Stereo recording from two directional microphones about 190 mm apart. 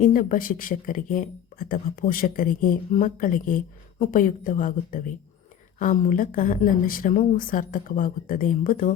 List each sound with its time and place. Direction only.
0.0 s speech: 45° left (ahead or behind)